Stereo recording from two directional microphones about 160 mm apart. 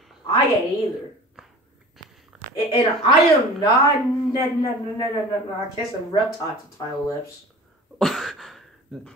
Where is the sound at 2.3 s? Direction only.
Centre (ahead or behind).